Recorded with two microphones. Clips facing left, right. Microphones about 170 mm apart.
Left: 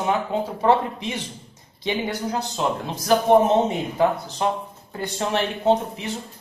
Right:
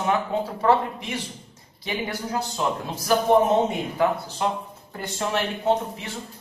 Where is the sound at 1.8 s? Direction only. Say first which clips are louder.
Left 4 dB; 20° left (ahead or behind).